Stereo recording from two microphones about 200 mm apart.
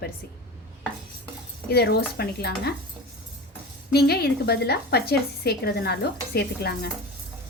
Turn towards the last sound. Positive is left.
turn(degrees=55)  # may be behind; listen again after turning